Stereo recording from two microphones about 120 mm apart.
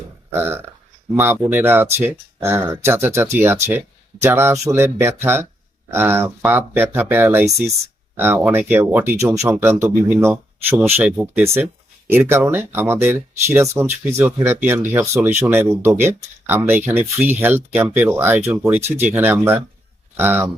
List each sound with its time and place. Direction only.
0.3 s speech: 20° right (ahead or behind)
11.0 s speech: 5° right (ahead or behind)
12.0 s speech: 20° right (ahead or behind)